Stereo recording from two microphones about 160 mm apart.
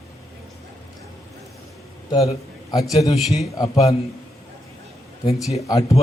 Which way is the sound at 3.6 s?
25° left (ahead or behind).